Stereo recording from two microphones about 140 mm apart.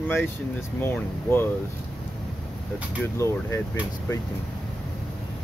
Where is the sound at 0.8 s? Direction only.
15° left (ahead or behind).